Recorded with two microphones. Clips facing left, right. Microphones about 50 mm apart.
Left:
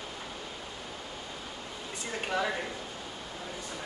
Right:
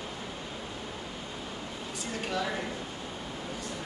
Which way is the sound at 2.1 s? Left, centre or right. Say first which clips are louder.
Left 1 dB; left.